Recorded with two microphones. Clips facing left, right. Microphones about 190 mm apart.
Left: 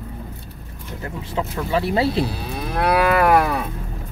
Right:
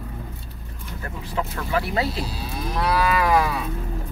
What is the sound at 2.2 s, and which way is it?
Moo, 60° left (ahead or behind).